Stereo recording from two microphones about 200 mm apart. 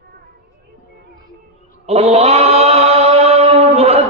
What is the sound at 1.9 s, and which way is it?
Chant, 30° right (ahead or behind).